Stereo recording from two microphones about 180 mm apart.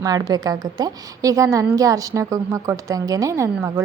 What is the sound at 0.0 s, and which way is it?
A woman's voice, 20° right (ahead or behind).